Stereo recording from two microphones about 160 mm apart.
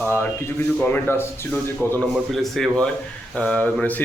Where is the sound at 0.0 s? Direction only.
10° left (ahead or behind).